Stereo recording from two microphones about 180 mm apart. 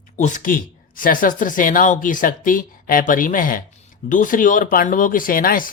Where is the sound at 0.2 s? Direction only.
45° left (ahead or behind).